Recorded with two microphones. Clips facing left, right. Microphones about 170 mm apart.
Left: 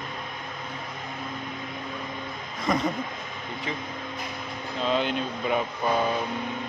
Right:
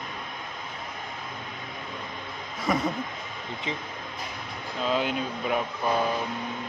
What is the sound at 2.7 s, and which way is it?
Speech, 5° right (ahead or behind).